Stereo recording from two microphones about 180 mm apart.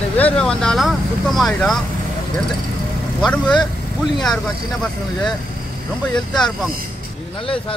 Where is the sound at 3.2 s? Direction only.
5° left (ahead or behind).